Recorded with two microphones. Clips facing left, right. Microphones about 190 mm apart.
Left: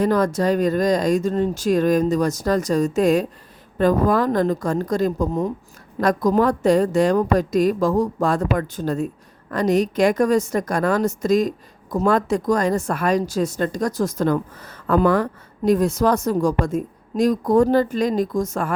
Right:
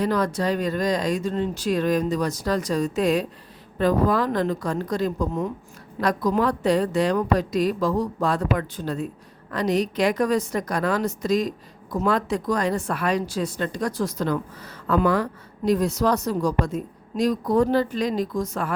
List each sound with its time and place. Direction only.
0.0 s a woman's voice: 45° left (ahead or behind)